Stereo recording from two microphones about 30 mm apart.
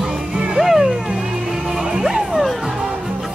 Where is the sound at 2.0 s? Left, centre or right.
Centre.